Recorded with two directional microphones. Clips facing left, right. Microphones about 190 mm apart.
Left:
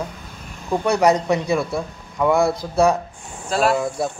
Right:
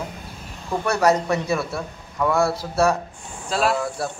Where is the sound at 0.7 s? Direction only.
15° left (ahead or behind).